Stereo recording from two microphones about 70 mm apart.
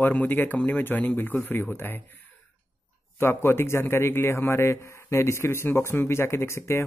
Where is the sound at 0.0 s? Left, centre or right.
Left.